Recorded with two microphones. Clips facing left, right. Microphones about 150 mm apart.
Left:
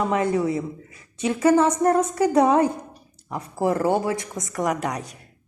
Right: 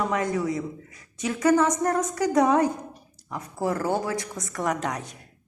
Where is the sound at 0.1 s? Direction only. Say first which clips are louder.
Left 4 dB; 30° left (ahead or behind); by 5.0 s 10° left (ahead or behind).